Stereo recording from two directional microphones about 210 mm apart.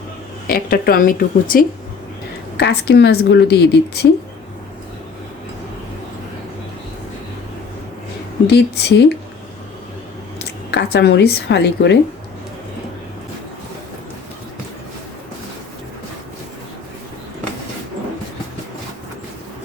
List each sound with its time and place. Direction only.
0.4 s a woman's voice: 45° left (ahead or behind)
8.4 s a woman's voice: 55° left (ahead or behind)
10.7 s a woman's voice: 55° left (ahead or behind)